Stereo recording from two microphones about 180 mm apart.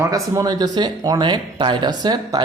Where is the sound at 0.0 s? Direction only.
20° right (ahead or behind).